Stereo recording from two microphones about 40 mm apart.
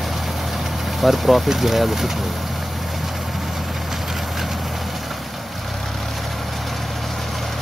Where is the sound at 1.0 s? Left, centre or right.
Centre.